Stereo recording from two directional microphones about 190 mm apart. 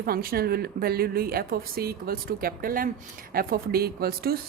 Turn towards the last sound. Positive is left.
turn(degrees=-55)  # may be behind; listen again after turning